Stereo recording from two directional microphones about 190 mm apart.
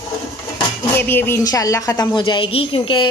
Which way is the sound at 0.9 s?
10° left (ahead or behind).